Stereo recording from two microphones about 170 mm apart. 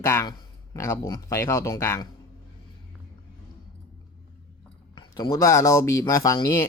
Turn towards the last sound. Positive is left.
turn(degrees=20)  # may be behind; listen again after turning